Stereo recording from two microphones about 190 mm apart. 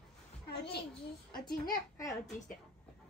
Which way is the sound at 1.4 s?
20° left (ahead or behind).